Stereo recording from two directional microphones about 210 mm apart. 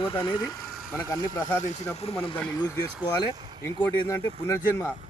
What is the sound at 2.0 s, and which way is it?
Speech, 25° left (ahead or behind).